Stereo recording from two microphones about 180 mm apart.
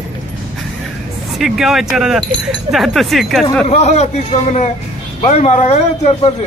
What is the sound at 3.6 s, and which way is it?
A man's voice, 40° left (ahead or behind).